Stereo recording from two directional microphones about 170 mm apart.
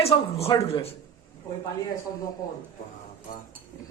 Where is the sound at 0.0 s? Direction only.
35° left (ahead or behind).